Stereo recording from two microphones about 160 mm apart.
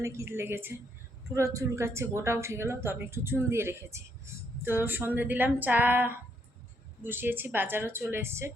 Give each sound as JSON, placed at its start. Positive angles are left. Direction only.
{"t": 0.0, "sound": "speech", "side_deg": -15}